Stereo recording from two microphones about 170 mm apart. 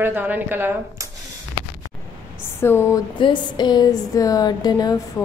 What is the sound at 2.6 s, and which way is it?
Speech, 15° left (ahead or behind).